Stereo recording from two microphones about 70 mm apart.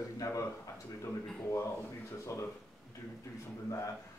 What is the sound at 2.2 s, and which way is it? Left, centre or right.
Speech, left.